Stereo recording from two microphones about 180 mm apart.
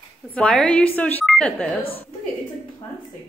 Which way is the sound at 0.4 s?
5° left (ahead or behind).